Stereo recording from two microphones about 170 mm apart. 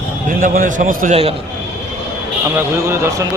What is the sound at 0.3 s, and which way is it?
Speech, 55° right (ahead or behind).